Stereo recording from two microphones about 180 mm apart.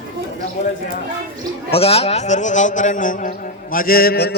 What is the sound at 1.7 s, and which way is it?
A man's voice, 35° left (ahead or behind).